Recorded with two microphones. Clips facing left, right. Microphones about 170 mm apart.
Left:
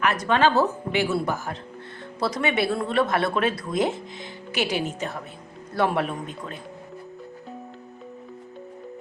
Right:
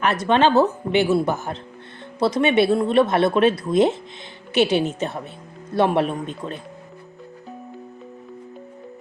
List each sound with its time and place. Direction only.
0.0 s speech: 25° right (ahead or behind)